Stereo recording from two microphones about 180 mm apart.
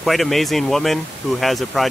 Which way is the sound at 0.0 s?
Centre (ahead or behind).